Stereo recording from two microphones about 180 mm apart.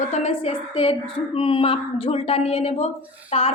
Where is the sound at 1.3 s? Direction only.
30° left (ahead or behind).